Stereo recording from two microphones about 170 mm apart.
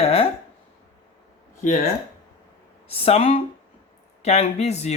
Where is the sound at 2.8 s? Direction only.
35° left (ahead or behind).